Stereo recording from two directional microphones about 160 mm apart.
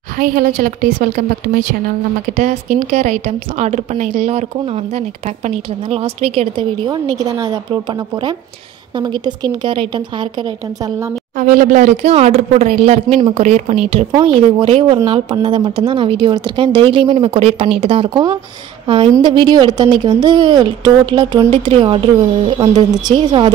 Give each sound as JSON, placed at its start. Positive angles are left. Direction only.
{"t": 0.2, "sound": "a woman's voice", "side_deg": -60}
{"t": 8.9, "sound": "a woman's voice", "side_deg": -30}
{"t": 11.3, "sound": "a woman's voice", "side_deg": -55}